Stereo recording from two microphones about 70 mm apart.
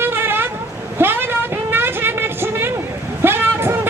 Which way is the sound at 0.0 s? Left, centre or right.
Right.